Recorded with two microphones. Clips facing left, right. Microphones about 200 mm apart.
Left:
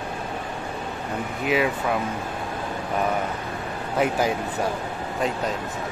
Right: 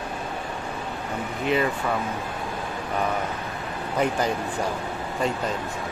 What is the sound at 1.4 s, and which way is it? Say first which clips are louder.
Speech: left 1 dB; 5° left (ahead or behind).